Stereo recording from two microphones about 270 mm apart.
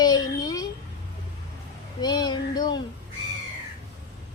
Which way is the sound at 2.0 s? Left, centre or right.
Centre.